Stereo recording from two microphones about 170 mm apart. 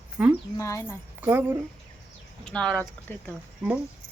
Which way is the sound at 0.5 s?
20° left (ahead or behind).